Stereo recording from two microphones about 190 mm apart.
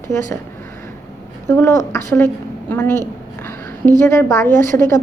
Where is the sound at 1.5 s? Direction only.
15° left (ahead or behind).